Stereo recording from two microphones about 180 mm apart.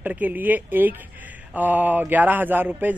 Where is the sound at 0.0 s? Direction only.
10° right (ahead or behind).